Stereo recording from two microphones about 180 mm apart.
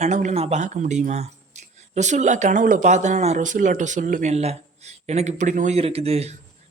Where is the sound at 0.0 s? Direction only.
40° right (ahead or behind).